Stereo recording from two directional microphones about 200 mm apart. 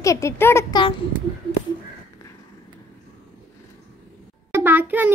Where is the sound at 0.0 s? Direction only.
15° left (ahead or behind).